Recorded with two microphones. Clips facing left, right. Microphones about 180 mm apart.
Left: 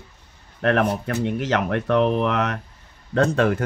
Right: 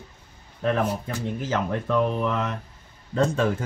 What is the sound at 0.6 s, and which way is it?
A man's voice, 75° left (ahead or behind).